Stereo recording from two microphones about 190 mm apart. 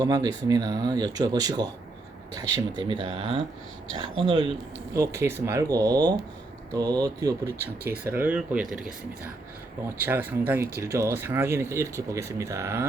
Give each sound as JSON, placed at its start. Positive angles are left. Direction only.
{"t": 0.0, "sound": "speech", "side_deg": -20}
{"t": 4.9, "sound": "speech", "side_deg": -15}
{"t": 10.0, "sound": "speech", "side_deg": -10}